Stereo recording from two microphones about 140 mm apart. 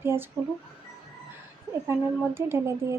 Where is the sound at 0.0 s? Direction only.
15° right (ahead or behind).